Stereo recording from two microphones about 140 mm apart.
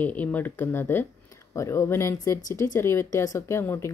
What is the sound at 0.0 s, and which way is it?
Speech, 10° left (ahead or behind).